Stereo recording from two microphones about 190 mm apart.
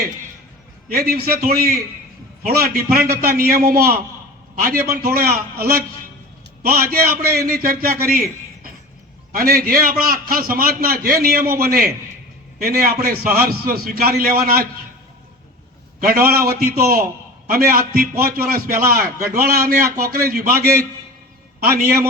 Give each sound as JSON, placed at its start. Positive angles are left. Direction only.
{"t": 0.9, "sound": "a man's voice", "side_deg": -50}
{"t": 4.8, "sound": "a man's voice", "side_deg": -15}
{"t": 5.5, "sound": "a man's voice", "side_deg": -55}
{"t": 16.0, "sound": "a man's voice", "side_deg": -50}